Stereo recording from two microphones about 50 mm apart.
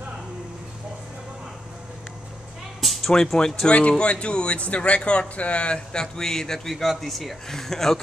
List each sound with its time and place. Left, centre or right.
2.8 s music: centre
3.6 s a man's voice: left; by 8.0 s centre